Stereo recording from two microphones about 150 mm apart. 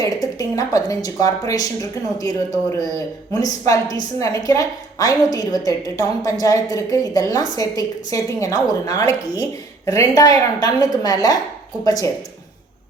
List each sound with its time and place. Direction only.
0.0 s a woman's voice: 25° left (ahead or behind)